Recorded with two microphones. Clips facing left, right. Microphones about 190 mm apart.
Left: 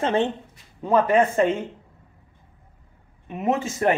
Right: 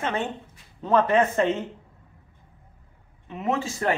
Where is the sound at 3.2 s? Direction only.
20° left (ahead or behind).